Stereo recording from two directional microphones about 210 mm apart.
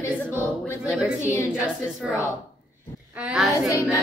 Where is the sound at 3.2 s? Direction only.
5° right (ahead or behind).